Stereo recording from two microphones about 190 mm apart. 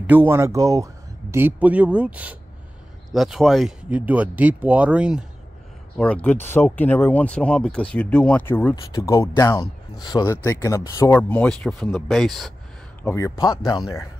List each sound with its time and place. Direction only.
0.0 s speech: 10° right (ahead or behind)
5.9 s speech: 5° left (ahead or behind)
13.1 s speech: 20° left (ahead or behind)